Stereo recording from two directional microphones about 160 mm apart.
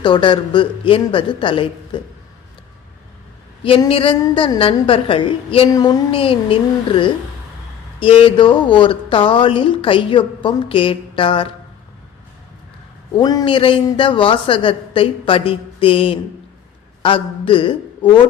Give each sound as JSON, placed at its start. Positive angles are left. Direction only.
{"t": 0.0, "sound": "speech", "side_deg": 30}
{"t": 3.6, "sound": "speech", "side_deg": 35}
{"t": 13.1, "sound": "speech", "side_deg": 25}